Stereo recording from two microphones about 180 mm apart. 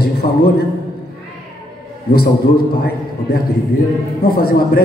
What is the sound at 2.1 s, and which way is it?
A man's voice, 60° left (ahead or behind).